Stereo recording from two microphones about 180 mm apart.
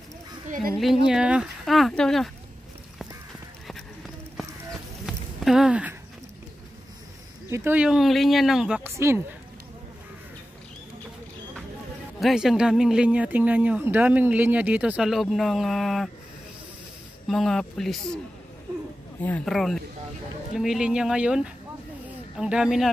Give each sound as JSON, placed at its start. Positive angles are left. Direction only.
{"t": 0.7, "sound": "speech", "side_deg": 0}
{"t": 5.0, "sound": "a sound", "side_deg": 0}
{"t": 7.4, "sound": "speech", "side_deg": -15}
{"t": 8.9, "sound": "speech", "side_deg": -15}
{"t": 12.2, "sound": "speech", "side_deg": 0}
{"t": 17.3, "sound": "speech", "side_deg": 0}
{"t": 19.2, "sound": "speech", "side_deg": 5}